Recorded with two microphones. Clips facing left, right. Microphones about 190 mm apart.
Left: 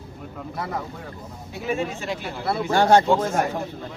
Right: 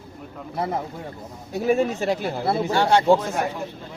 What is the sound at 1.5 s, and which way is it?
Speech, 40° right (ahead or behind).